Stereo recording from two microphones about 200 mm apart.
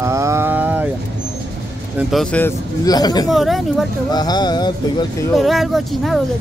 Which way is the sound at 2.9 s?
20° left (ahead or behind).